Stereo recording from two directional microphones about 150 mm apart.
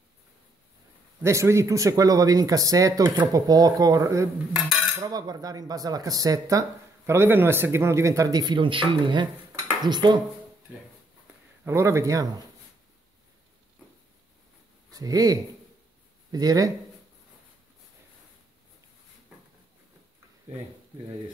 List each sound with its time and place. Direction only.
1.2 s speech: 20° right (ahead or behind)
4.6 s cutlery: centre (ahead or behind)
4.9 s speech: 25° right (ahead or behind)
11.6 s speech: 20° right (ahead or behind)
14.9 s speech: 25° right (ahead or behind)